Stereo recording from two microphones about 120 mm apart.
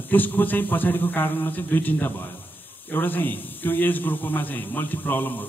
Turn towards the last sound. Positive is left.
turn(degrees=15)  # may be behind; listen again after turning